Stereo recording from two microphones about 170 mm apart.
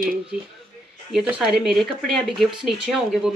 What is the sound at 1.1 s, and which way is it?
Speech, 5° right (ahead or behind).